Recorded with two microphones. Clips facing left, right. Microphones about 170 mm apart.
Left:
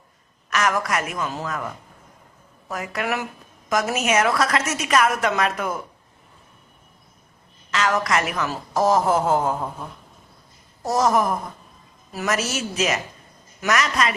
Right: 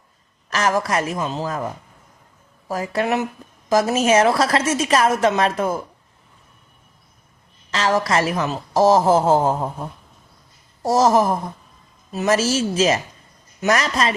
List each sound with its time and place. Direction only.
0.5 s a woman's voice: 30° right (ahead or behind)
7.7 s a woman's voice: 30° right (ahead or behind)
10.8 s a woman's voice: 30° right (ahead or behind)